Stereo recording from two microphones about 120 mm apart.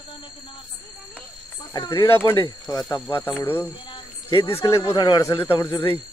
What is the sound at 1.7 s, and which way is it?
Speech, 30° left (ahead or behind).